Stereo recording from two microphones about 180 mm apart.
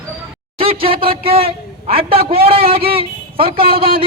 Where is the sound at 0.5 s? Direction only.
30° right (ahead or behind).